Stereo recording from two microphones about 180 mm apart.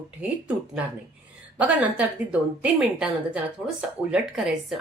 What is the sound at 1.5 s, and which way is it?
Speech, 5° right (ahead or behind).